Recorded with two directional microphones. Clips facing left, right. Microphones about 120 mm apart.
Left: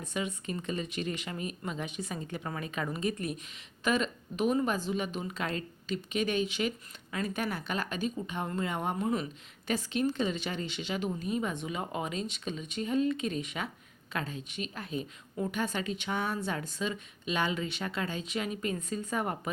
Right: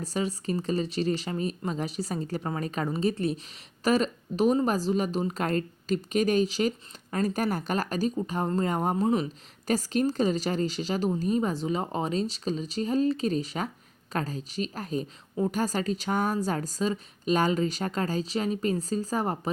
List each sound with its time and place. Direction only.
0.0 s a woman's voice: 35° right (ahead or behind)